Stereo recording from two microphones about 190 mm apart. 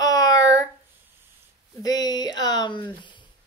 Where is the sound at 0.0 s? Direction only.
20° left (ahead or behind).